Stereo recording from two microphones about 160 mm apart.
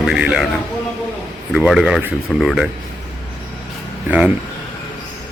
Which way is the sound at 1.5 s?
5° right (ahead or behind).